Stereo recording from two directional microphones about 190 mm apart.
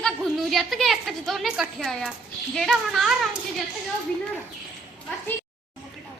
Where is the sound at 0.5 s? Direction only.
Centre (ahead or behind).